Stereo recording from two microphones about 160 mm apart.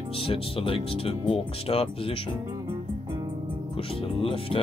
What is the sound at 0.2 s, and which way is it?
Speech, 35° left (ahead or behind).